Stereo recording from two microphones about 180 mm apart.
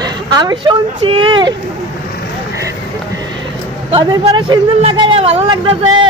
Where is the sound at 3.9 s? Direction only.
25° right (ahead or behind).